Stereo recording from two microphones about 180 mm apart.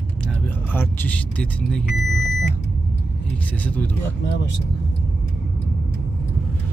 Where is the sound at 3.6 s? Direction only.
10° left (ahead or behind).